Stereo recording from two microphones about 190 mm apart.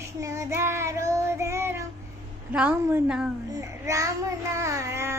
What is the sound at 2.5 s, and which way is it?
A woman's voice, 5° right (ahead or behind).